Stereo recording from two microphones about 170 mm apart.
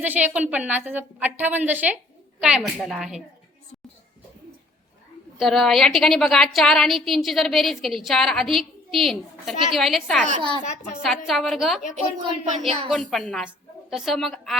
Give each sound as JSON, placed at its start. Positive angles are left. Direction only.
{"t": 0.0, "sound": "a woman's voice", "side_deg": -10}
{"t": 5.4, "sound": "a woman's voice", "side_deg": 0}
{"t": 10.6, "sound": "a woman's voice", "side_deg": 45}
{"t": 11.0, "sound": "a woman's voice", "side_deg": 0}
{"t": 12.5, "sound": "speech", "side_deg": -45}
{"t": 12.9, "sound": "a woman's voice", "side_deg": 0}